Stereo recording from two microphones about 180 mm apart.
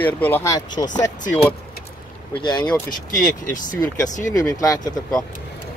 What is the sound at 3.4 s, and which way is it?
Speech, 20° left (ahead or behind).